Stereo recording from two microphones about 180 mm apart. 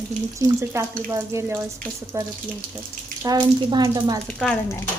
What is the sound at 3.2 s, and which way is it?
Speech, 20° right (ahead or behind).